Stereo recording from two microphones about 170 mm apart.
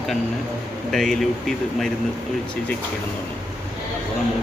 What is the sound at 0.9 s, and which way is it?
Speech, centre (ahead or behind).